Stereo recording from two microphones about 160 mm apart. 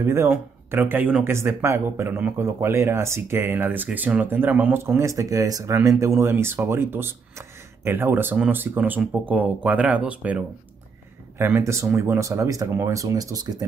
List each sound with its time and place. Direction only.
0.0 s speech: 15° right (ahead or behind)